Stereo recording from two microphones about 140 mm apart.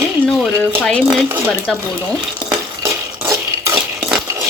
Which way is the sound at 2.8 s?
20° right (ahead or behind).